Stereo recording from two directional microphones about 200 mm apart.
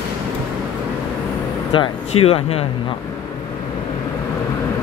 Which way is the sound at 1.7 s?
25° left (ahead or behind).